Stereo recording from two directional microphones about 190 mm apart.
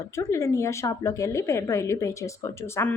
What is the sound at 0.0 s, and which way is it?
A woman's voice, 15° left (ahead or behind).